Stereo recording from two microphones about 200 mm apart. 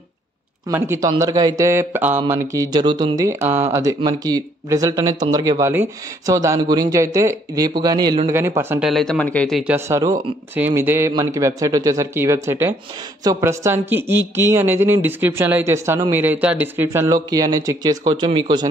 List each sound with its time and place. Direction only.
0.7 s speech: 15° right (ahead or behind)